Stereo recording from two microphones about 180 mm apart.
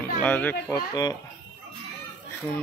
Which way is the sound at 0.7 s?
20° left (ahead or behind).